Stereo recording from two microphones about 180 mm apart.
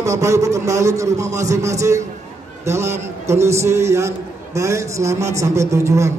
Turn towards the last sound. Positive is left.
turn(degrees=-15)  # may be behind; listen again after turning